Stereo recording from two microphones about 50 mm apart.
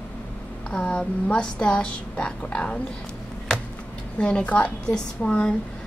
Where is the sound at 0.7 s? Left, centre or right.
Left.